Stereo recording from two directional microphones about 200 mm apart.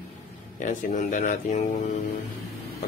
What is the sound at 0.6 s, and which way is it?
Speech, 40° left (ahead or behind).